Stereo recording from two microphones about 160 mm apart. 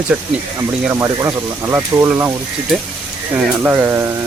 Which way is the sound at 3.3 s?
10° right (ahead or behind).